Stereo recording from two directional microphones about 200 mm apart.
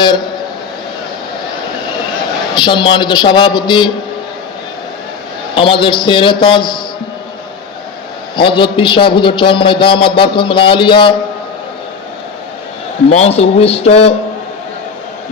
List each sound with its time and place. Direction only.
2.6 s a man's voice: 25° left (ahead or behind)
5.5 s a man's voice: 25° left (ahead or behind)
8.4 s a man's voice: 25° left (ahead or behind)
13.1 s speech: 30° left (ahead or behind)